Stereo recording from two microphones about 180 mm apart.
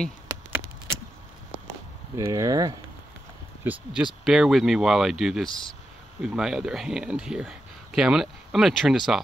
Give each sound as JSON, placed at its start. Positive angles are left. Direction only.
{"t": 2.1, "sound": "speech", "side_deg": -20}
{"t": 3.6, "sound": "speech", "side_deg": -5}